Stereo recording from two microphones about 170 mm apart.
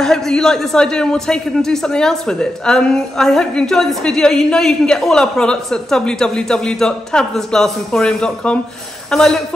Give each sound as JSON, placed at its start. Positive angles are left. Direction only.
{"t": 0.0, "sound": "speech", "side_deg": 0}